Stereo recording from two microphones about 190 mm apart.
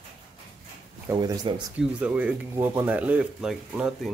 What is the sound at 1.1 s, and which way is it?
Speech, 20° right (ahead or behind).